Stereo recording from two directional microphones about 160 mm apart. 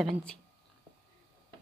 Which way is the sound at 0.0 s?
5° left (ahead or behind).